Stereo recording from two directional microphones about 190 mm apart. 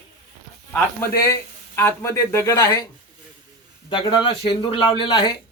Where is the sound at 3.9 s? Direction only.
25° left (ahead or behind).